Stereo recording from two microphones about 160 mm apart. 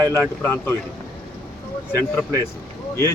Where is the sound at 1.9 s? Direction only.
20° right (ahead or behind).